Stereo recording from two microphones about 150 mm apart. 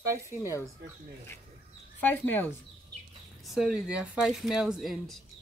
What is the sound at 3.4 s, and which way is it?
Speech, 5° right (ahead or behind).